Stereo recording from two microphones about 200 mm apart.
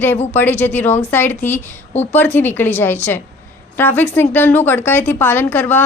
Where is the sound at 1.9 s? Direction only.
35° left (ahead or behind).